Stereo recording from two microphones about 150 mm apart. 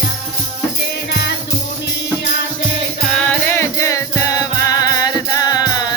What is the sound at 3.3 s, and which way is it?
Music, 15° left (ahead or behind).